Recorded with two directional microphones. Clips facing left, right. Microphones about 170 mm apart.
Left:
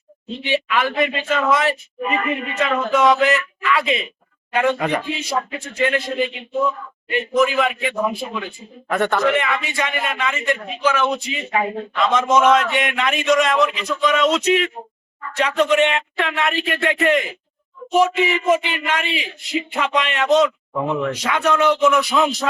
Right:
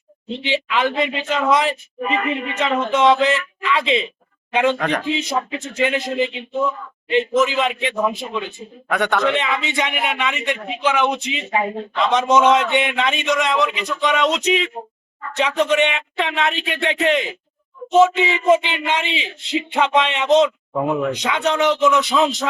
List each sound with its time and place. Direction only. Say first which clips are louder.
0.4 s a man's voice: even; 20° right (ahead or behind)
4.8 s speech: even; 10° left (ahead or behind)
5.1 s a man's voice: right 2 dB; 20° right (ahead or behind)
8.9 s a man's voice: even; centre (ahead or behind)
9.2 s a man's voice: left 1 dB; 20° right (ahead or behind)
16.1 s a man's voice: even; 20° right (ahead or behind)